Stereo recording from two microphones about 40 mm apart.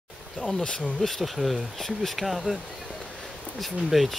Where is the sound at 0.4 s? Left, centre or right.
Centre.